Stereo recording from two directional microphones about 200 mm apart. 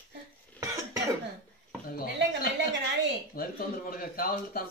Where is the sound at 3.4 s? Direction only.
45° left (ahead or behind).